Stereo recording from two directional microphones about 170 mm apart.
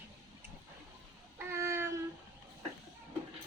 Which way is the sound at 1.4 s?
15° right (ahead or behind).